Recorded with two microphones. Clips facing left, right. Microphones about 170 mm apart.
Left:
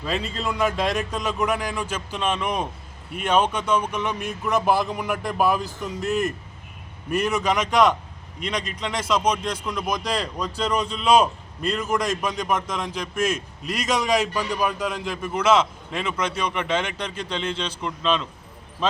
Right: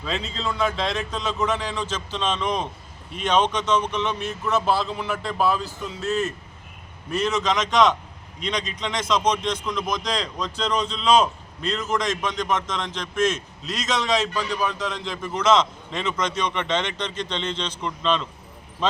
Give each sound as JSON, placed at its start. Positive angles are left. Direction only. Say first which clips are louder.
{"t": 0.0, "sound": "speech", "louder": "left 2 dB", "side_deg": 10}